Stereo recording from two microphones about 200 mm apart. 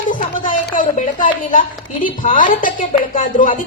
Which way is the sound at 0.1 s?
40° left (ahead or behind).